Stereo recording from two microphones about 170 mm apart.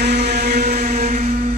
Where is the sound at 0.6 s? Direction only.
45° right (ahead or behind).